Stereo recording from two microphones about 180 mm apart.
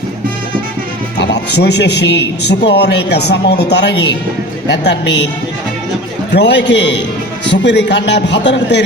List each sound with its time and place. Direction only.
1.5 s a man's voice: 70° left (ahead or behind)
6.3 s a man's voice: 75° left (ahead or behind)